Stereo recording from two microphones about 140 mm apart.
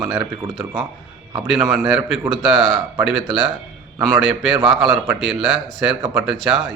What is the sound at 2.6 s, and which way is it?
Speech, 45° right (ahead or behind).